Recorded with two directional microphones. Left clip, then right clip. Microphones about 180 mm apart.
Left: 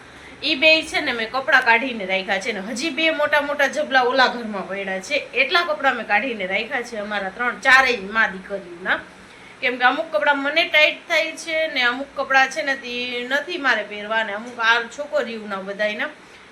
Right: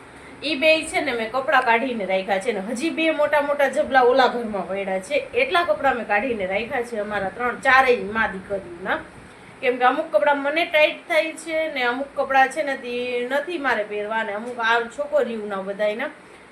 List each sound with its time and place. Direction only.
0.4 s a woman's voice: 10° left (ahead or behind)